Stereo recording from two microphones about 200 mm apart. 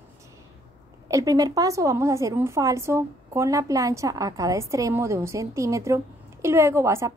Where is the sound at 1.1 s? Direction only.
15° right (ahead or behind).